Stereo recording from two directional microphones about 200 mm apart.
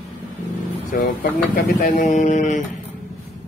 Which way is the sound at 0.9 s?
45° left (ahead or behind).